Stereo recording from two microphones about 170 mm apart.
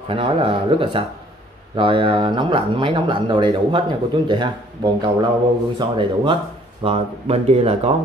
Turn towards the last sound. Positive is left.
turn(degrees=-40)  # may be behind; listen again after turning